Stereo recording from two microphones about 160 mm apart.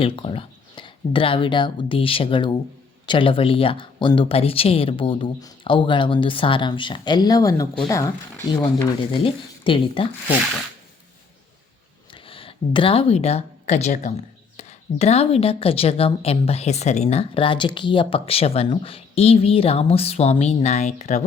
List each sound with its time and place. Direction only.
0.0 s speech: 35° left (ahead or behind)
12.1 s speech: 35° left (ahead or behind)